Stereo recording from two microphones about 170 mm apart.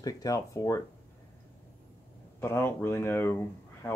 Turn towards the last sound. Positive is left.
turn(degrees=10)  # may be behind; listen again after turning